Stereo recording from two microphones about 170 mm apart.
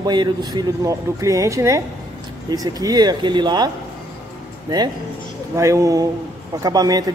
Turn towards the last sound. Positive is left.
turn(degrees=-25)  # may be behind; listen again after turning